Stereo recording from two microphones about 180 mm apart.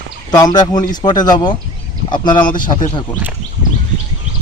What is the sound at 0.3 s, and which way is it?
Speech, 20° left (ahead or behind).